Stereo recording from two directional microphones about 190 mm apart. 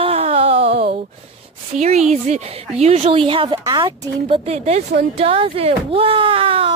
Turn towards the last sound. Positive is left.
turn(degrees=-30)  # may be behind; listen again after turning